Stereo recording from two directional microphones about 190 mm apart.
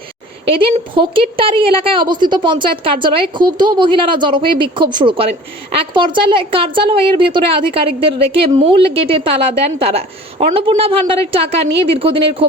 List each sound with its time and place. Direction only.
0.4 s a woman's voice: 30° right (ahead or behind)